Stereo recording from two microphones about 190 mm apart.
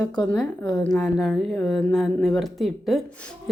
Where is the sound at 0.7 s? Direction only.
5° left (ahead or behind).